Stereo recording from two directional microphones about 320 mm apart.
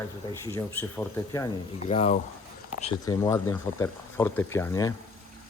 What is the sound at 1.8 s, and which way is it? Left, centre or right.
Speech, centre.